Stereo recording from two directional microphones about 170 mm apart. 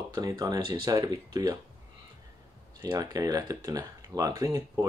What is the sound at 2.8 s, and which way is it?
Speech, 25° right (ahead or behind).